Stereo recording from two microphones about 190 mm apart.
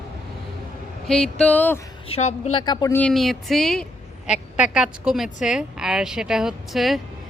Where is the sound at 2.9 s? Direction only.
5° left (ahead or behind).